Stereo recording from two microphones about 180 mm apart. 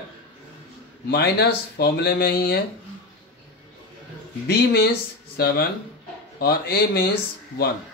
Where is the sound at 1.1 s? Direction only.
65° left (ahead or behind).